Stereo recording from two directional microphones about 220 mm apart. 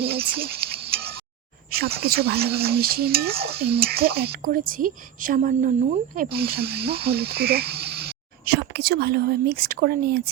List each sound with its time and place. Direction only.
0.0 s a sound: 45° right (ahead or behind)
1.7 s speech: 45° right (ahead or behind)
6.1 s speech: 45° right (ahead or behind)